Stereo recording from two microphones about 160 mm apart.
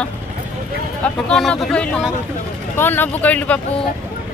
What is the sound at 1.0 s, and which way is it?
Speech, centre (ahead or behind).